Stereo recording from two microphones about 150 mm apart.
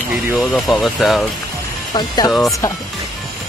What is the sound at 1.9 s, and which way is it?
Speech, 30° left (ahead or behind).